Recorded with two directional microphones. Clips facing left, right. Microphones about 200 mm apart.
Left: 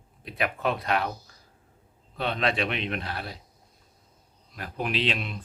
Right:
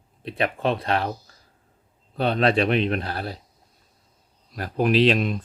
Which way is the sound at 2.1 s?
35° right (ahead or behind).